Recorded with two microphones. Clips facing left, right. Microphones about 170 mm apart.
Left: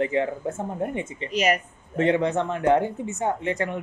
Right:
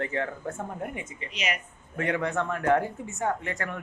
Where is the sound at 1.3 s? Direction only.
45° left (ahead or behind).